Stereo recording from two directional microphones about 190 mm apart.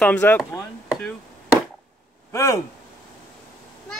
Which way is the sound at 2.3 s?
15° left (ahead or behind).